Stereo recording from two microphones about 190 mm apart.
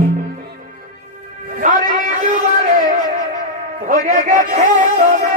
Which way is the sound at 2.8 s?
45° right (ahead or behind).